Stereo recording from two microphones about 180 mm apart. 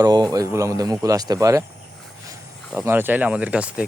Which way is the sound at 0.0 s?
20° right (ahead or behind).